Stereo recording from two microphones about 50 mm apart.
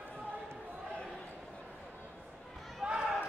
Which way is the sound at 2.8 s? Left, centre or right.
Centre.